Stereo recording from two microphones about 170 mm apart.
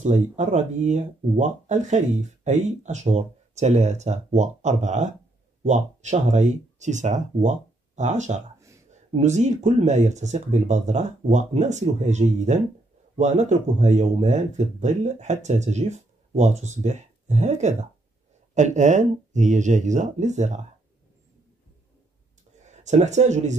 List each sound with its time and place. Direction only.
0.0 s speech: 45° right (ahead or behind)
22.7 s speech: 45° right (ahead or behind)